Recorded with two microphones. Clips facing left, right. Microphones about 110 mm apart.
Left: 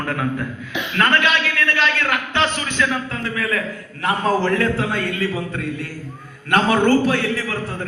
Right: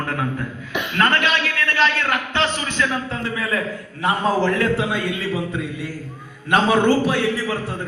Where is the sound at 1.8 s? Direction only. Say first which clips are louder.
Right 4 dB; 35° right (ahead or behind).